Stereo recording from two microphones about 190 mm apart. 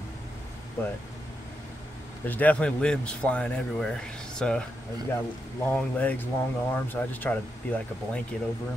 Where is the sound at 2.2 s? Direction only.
10° left (ahead or behind).